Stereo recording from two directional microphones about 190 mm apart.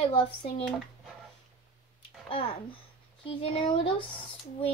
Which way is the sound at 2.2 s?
30° left (ahead or behind).